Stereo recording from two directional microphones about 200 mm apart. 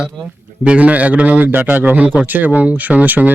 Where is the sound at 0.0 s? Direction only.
5° right (ahead or behind).